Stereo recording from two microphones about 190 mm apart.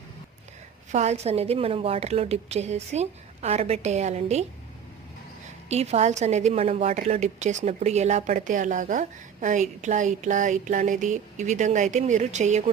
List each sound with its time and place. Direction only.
0.9 s a woman's voice: 35° right (ahead or behind)
5.6 s a woman's voice: 35° right (ahead or behind)